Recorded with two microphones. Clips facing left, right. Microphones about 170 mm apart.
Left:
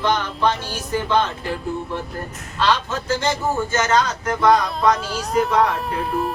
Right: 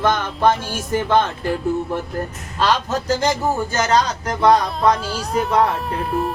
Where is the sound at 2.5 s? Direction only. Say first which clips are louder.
Right 2 dB; 40° right (ahead or behind).